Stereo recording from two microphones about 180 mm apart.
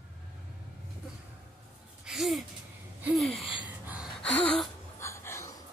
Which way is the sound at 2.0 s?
Centre (ahead or behind).